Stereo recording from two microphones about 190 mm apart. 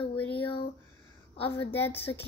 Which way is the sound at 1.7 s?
10° left (ahead or behind).